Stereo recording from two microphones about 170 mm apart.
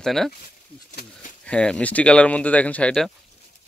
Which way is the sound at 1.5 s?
5° left (ahead or behind).